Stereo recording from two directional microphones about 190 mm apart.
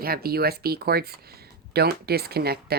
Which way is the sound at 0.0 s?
50° right (ahead or behind).